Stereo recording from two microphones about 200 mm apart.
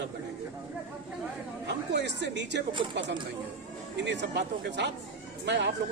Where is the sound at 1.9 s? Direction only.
60° right (ahead or behind).